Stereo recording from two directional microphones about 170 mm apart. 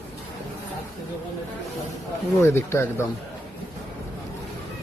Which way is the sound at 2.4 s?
15° left (ahead or behind).